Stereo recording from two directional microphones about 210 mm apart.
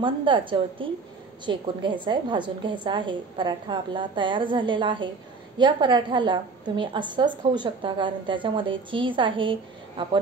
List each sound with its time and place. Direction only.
0.0 s a woman's voice: 25° right (ahead or behind)